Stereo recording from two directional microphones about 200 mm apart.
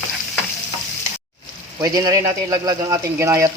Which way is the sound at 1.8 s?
15° right (ahead or behind).